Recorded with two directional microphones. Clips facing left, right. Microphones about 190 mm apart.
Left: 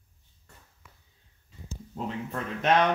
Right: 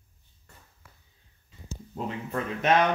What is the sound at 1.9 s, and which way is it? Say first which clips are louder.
Speech: right 2 dB; 5° right (ahead or behind).